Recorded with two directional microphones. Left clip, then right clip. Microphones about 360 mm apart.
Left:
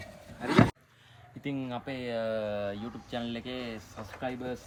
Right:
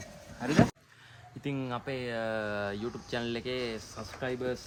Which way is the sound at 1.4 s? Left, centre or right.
Centre.